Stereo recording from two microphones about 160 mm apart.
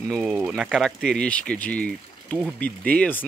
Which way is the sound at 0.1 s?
Centre (ahead or behind).